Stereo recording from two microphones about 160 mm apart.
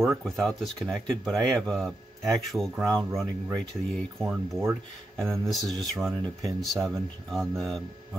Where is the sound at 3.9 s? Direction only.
Centre (ahead or behind).